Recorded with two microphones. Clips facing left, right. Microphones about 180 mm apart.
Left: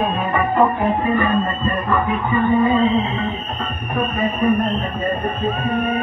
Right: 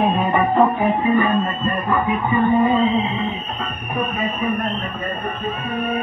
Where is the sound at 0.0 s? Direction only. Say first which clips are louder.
Right 2 dB; 20° right (ahead or behind).